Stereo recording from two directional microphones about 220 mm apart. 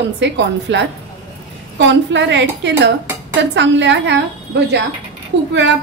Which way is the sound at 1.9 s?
55° right (ahead or behind).